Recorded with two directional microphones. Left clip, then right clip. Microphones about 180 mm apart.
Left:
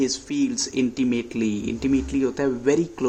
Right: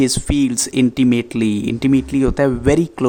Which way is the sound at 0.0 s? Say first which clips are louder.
Right 7 dB; 45° right (ahead or behind).